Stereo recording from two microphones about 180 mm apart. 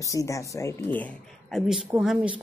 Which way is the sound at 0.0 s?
20° left (ahead or behind).